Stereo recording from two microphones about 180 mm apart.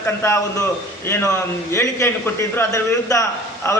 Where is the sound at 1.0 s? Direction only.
15° left (ahead or behind).